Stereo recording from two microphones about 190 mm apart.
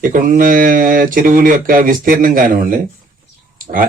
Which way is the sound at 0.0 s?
45° right (ahead or behind).